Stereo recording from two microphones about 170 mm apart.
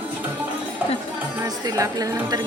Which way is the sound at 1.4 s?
20° right (ahead or behind).